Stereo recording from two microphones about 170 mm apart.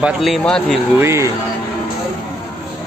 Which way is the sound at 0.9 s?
15° right (ahead or behind).